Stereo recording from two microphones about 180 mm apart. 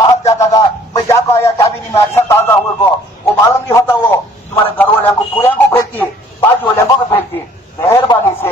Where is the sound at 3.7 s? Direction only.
15° left (ahead or behind).